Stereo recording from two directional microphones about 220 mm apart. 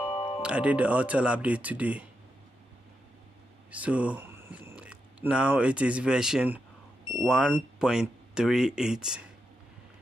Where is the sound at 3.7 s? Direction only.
5° right (ahead or behind).